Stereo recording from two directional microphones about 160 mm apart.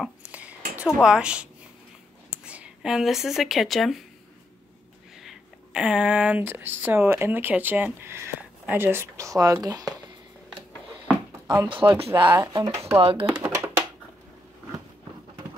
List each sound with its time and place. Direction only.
0.0 s a sound: 10° right (ahead or behind)
1.0 s a woman's voice: 5° right (ahead or behind)
5.2 s speech: 5° right (ahead or behind); by 9.9 s 25° right (ahead or behind)
11.4 s speech: 20° right (ahead or behind)
11.7 s speech: 30° right (ahead or behind)
13.0 s speech: 35° right (ahead or behind)
13.3 s a sound: 10° right (ahead or behind)